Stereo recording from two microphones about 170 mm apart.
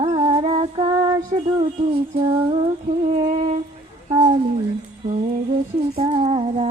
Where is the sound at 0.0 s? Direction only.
35° right (ahead or behind).